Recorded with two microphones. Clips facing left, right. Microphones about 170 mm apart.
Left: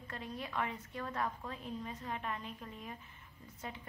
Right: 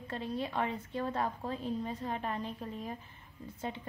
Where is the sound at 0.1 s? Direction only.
30° right (ahead or behind).